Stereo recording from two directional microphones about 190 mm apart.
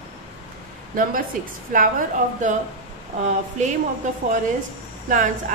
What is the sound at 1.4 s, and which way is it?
A woman's voice, 45° right (ahead or behind).